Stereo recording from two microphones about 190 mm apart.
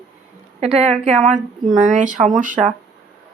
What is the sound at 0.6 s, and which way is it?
Speech, 35° right (ahead or behind).